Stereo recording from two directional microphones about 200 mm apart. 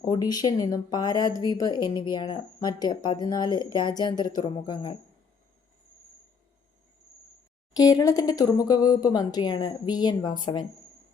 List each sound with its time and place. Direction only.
0.0 s speech: 20° left (ahead or behind)
7.7 s speech: 20° left (ahead or behind)